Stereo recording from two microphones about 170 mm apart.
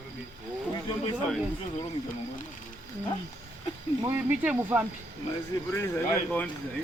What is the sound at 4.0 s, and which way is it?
Speech, 10° right (ahead or behind).